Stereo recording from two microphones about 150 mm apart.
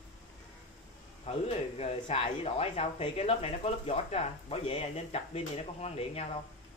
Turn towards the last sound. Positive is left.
turn(degrees=45)  # may be behind; listen again after turning